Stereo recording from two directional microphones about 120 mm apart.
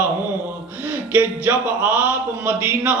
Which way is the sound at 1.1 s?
15° right (ahead or behind).